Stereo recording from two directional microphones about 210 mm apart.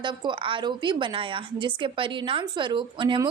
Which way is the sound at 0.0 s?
20° right (ahead or behind).